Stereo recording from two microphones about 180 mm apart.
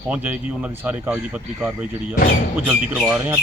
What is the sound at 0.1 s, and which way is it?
A man's voice, 10° right (ahead or behind).